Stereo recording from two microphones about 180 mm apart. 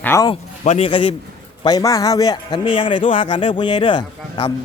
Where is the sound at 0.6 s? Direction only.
35° left (ahead or behind).